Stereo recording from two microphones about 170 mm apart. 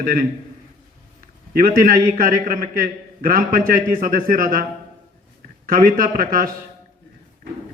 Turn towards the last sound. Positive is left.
turn(degrees=-55)  # may be behind; listen again after turning